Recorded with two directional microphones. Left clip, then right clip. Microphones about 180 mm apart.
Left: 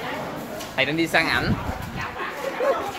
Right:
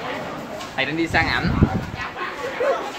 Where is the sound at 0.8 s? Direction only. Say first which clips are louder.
Even; 60° left (ahead or behind).